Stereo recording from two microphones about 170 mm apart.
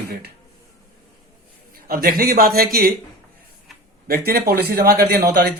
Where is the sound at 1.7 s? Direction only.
60° right (ahead or behind).